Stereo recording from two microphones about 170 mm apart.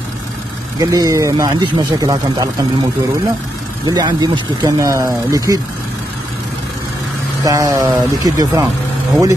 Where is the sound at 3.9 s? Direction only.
25° right (ahead or behind).